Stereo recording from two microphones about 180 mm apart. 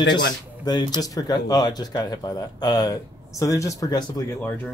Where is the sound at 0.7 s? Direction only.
20° left (ahead or behind).